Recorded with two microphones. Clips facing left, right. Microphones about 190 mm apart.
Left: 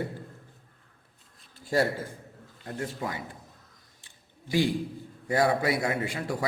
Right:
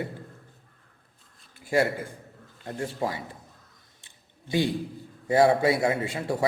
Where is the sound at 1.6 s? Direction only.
15° right (ahead or behind).